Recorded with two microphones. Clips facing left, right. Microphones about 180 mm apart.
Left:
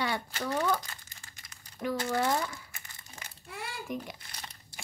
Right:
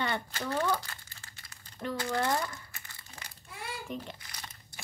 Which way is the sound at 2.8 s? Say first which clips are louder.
Even; 20° left (ahead or behind).